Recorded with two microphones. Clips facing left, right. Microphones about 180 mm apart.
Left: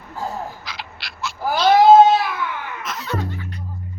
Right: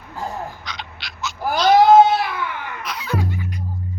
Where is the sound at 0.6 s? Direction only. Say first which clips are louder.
Even; 5° left (ahead or behind).